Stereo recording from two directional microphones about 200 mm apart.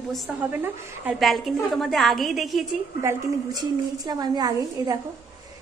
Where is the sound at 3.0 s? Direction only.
15° right (ahead or behind).